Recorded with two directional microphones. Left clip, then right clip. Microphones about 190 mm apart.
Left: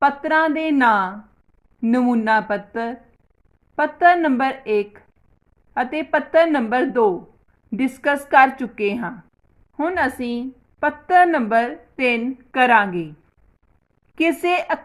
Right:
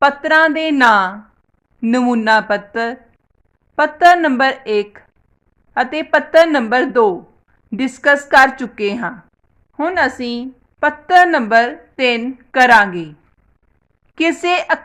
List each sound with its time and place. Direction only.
0.0 s a woman's voice: 15° right (ahead or behind)
14.2 s a woman's voice: 10° right (ahead or behind)